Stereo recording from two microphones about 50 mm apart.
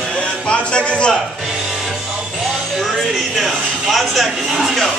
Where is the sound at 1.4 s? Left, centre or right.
Centre.